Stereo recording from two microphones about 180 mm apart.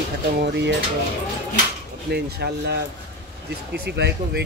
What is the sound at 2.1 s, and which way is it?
Speech, 65° right (ahead or behind).